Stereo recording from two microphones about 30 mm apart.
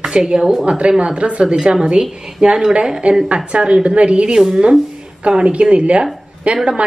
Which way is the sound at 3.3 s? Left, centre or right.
Right.